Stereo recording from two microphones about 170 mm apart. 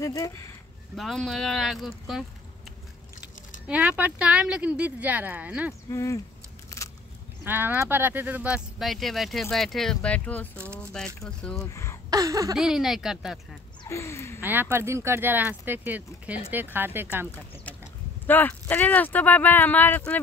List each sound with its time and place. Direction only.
0.0 s speech: 20° left (ahead or behind)
0.9 s speech: centre (ahead or behind)
3.6 s speech: 10° right (ahead or behind)
5.9 s speech: 20° left (ahead or behind)
6.8 s biting: 20° left (ahead or behind)
7.4 s speech: 10° right (ahead or behind); by 10.6 s 10° left (ahead or behind)
10.8 s a sound: 5° left (ahead or behind)
11.5 s speech: 15° left (ahead or behind)
12.1 s a sound: 20° right (ahead or behind)
12.5 s speech: centre (ahead or behind)
13.8 s speech: 15° left (ahead or behind)
14.4 s speech: 10° right (ahead or behind)
18.2 s speech: 10° left (ahead or behind)